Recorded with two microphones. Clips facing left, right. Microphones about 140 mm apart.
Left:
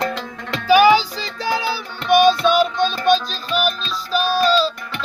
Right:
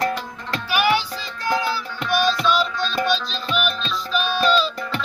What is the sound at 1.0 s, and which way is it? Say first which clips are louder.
Music: left 4 dB; 90° left.